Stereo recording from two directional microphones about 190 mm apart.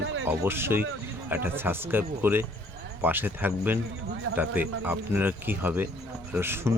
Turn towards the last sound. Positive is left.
turn(degrees=-10)  # may be behind; listen again after turning